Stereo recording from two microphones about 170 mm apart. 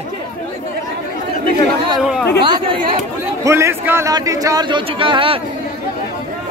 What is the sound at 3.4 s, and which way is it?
A man's voice, 15° right (ahead or behind).